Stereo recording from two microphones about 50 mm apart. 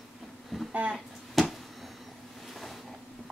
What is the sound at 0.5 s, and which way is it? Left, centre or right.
Speech, centre.